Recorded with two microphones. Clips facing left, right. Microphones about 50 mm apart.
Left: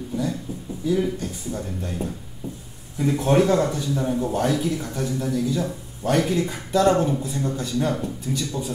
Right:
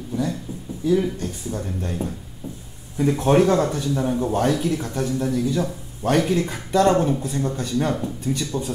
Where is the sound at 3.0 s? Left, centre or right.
Right.